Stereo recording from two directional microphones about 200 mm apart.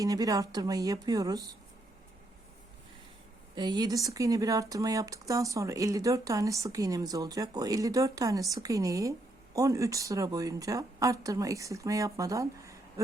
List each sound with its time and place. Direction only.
0.0 s speech: 20° right (ahead or behind)
3.5 s speech: 20° right (ahead or behind)